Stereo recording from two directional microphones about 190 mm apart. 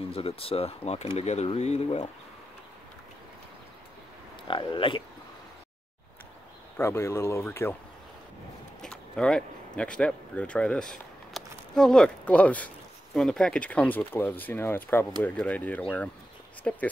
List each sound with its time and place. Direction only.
0.1 s speech: 30° left (ahead or behind)
4.5 s speech: 25° left (ahead or behind)
6.8 s speech: 15° left (ahead or behind)
8.8 s speech: 5° left (ahead or behind)